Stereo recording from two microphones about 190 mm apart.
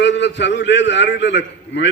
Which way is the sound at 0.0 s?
70° left (ahead or behind).